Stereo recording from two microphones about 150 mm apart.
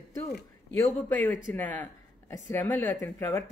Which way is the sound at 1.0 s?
15° left (ahead or behind).